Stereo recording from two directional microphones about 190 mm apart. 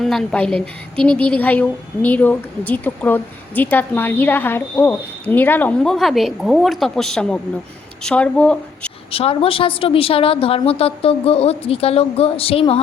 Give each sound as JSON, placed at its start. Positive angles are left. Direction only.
{"t": 0.0, "sound": "a woman's voice", "side_deg": 0}
{"t": 9.1, "sound": "a woman's voice", "side_deg": 30}